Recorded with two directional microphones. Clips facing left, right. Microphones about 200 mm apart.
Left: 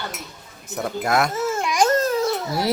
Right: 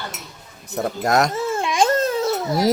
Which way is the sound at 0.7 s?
40° right (ahead or behind).